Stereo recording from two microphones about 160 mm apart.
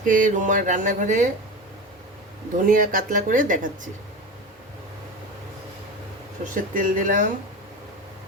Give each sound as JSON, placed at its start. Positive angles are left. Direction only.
{"t": 0.1, "sound": "a sound", "side_deg": -55}
{"t": 2.6, "sound": "speech", "side_deg": -60}
{"t": 6.4, "sound": "speech", "side_deg": -55}